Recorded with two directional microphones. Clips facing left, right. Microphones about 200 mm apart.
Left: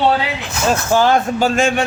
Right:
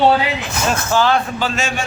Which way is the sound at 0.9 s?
45° left (ahead or behind).